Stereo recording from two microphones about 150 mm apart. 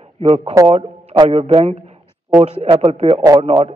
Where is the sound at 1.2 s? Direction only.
40° right (ahead or behind).